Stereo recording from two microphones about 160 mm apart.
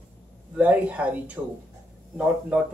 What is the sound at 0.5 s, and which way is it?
Speech, 10° right (ahead or behind).